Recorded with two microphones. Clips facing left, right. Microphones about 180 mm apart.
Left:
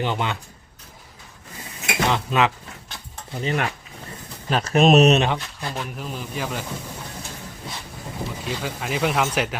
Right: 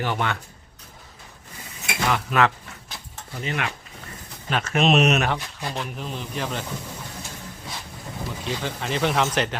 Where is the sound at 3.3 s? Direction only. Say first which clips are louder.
Left 4 dB; 35° left (ahead or behind).